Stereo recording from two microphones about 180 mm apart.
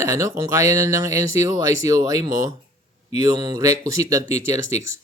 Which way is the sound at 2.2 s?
90° left.